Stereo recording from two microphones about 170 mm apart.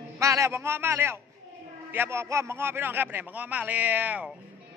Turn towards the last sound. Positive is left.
turn(degrees=-10)  # may be behind; listen again after turning